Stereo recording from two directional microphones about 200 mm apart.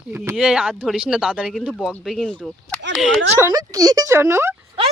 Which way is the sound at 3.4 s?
20° right (ahead or behind).